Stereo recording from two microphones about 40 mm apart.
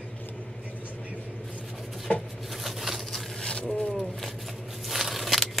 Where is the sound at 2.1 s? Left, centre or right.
Left.